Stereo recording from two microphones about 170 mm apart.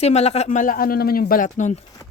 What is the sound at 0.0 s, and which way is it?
Speech, 40° left (ahead or behind).